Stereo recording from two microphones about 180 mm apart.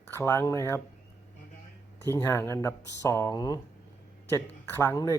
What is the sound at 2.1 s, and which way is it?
Speech, 15° left (ahead or behind).